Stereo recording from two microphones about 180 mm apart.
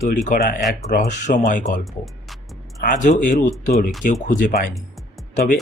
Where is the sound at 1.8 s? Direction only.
Centre (ahead or behind).